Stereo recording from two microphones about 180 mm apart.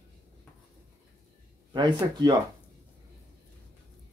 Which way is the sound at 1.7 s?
25° right (ahead or behind).